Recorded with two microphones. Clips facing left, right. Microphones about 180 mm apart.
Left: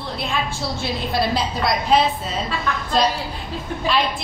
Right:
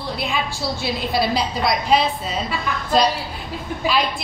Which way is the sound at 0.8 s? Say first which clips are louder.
Right 1 dB; centre (ahead or behind).